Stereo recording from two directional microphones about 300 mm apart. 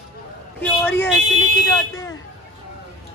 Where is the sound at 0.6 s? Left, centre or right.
Centre.